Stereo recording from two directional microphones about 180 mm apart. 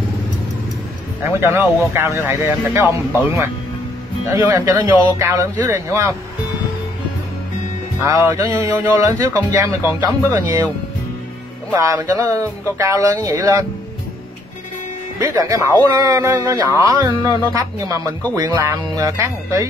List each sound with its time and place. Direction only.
1.4 s speech: 15° right (ahead or behind)
4.3 s speech: 20° right (ahead or behind)
8.0 s speech: 15° right (ahead or behind)
11.7 s speech: 15° right (ahead or behind)
15.1 s speech: 20° right (ahead or behind)